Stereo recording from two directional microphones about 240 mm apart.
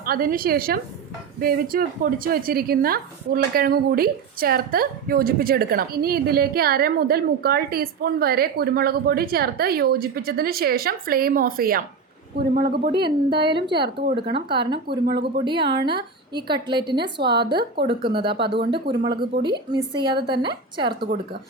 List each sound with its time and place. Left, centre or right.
0.0 s a woman's voice: right
13.1 s a woman's voice: centre
13.7 s a woman's voice: right
16.3 s a woman's voice: centre
17.2 s speech: right
18.1 s a woman's voice: right